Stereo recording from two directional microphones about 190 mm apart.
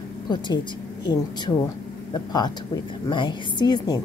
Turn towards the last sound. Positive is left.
turn(degrees=20)  # may be behind; listen again after turning